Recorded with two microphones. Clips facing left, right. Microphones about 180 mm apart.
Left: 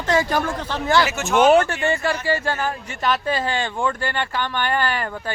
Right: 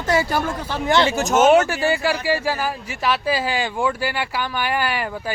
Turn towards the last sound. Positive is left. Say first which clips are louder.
# even
turn(degrees=-10)  # may be behind; listen again after turning